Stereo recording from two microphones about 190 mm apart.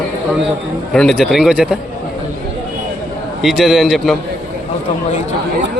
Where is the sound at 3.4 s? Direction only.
Centre (ahead or behind).